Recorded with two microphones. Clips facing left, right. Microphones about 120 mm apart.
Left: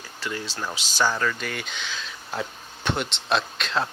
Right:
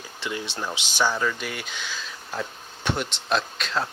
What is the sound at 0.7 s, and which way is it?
Speech, 15° right (ahead or behind).